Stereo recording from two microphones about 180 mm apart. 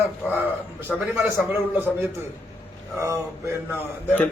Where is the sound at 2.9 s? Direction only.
15° right (ahead or behind).